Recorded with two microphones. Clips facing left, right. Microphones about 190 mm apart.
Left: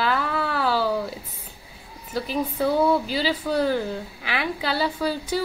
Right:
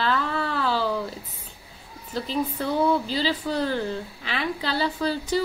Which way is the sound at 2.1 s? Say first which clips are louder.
Left 1 dB; 5° left (ahead or behind).